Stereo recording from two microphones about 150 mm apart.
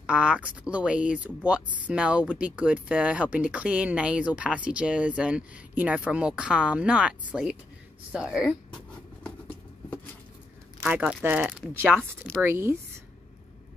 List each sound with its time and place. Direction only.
0.0 s speech: 10° right (ahead or behind)
10.9 s speech: 10° right (ahead or behind)